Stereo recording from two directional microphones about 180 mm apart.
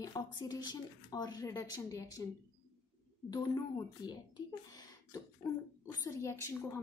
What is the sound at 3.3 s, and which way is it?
A woman's voice, 25° left (ahead or behind).